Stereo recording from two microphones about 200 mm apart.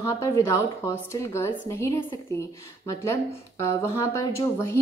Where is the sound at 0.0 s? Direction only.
15° left (ahead or behind).